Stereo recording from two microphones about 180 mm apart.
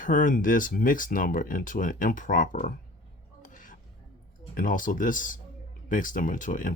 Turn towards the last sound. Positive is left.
turn(degrees=50)  # may be behind; listen again after turning